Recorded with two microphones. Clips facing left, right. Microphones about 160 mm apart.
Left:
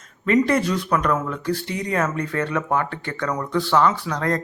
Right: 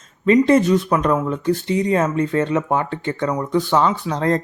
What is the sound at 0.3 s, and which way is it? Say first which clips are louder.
Speech: right 5 dB; 20° right (ahead or behind).